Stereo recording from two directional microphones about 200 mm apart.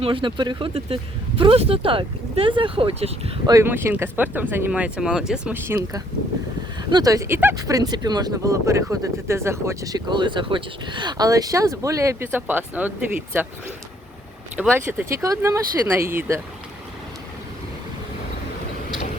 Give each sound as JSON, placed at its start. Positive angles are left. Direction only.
{"t": 0.0, "sound": "speech", "side_deg": -25}
{"t": 3.5, "sound": "speech", "side_deg": -10}
{"t": 14.5, "sound": "speech", "side_deg": -5}